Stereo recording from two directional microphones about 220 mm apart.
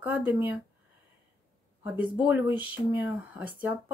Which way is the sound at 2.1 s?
5° right (ahead or behind).